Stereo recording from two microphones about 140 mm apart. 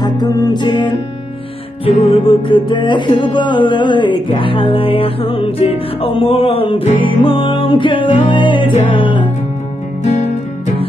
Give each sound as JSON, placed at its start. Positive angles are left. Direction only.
{"t": 0.0, "sound": "music", "side_deg": 25}
{"t": 1.9, "sound": "music", "side_deg": 45}
{"t": 10.0, "sound": "music", "side_deg": 55}